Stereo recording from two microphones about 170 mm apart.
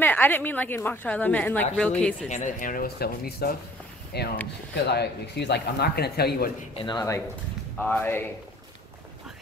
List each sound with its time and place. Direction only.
0.0 s a woman's voice: 10° left (ahead or behind)
2.2 s speech: 45° left (ahead or behind); by 6.5 s 70° left (ahead or behind)
6.7 s speech: 25° left (ahead or behind)
7.7 s a woman's voice: 5° left (ahead or behind)